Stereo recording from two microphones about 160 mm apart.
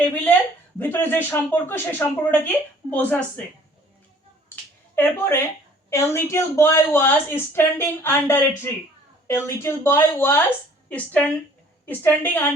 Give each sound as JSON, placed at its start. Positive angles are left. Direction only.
{"t": 0.0, "sound": "a sound", "side_deg": 10}
{"t": 0.8, "sound": "a woman's voice", "side_deg": 10}
{"t": 4.9, "sound": "a woman's voice", "side_deg": 15}